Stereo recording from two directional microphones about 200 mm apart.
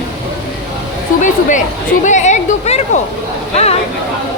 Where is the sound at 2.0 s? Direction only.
35° left (ahead or behind).